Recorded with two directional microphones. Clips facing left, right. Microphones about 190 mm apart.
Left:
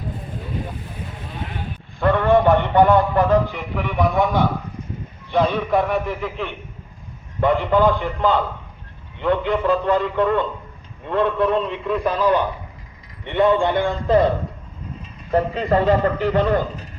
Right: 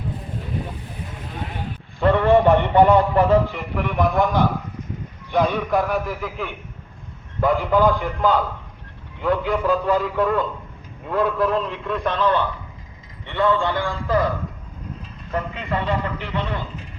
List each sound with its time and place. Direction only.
2.2 s a man's voice: 5° right (ahead or behind); by 14.3 s 25° left (ahead or behind)
15.3 s a man's voice: 35° left (ahead or behind)